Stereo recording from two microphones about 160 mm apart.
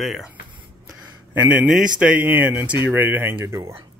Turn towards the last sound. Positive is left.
turn(degrees=-15)  # may be behind; listen again after turning